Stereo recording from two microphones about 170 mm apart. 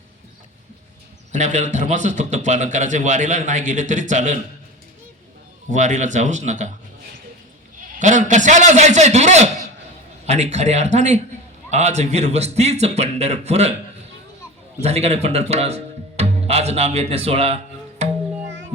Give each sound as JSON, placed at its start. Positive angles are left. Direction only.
{"t": 1.3, "sound": "a man's voice", "side_deg": -45}
{"t": 5.7, "sound": "a man's voice", "side_deg": -45}
{"t": 7.8, "sound": "a man's voice", "side_deg": -45}
{"t": 14.8, "sound": "speech", "side_deg": -40}
{"t": 18.0, "sound": "music", "side_deg": -40}